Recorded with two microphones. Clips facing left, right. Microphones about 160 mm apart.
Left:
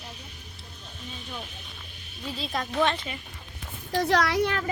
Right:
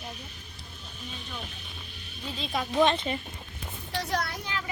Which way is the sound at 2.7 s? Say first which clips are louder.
Right 3 dB; 20° right (ahead or behind).